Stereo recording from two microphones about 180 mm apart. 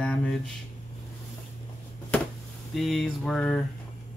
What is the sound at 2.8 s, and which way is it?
Speech, centre (ahead or behind).